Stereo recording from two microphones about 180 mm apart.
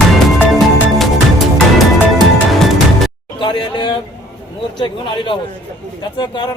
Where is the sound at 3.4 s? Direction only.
25° left (ahead or behind).